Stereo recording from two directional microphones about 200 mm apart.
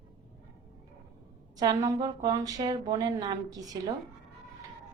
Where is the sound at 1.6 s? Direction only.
20° right (ahead or behind).